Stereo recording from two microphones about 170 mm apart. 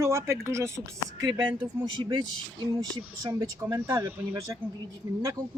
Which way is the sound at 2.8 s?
20° right (ahead or behind).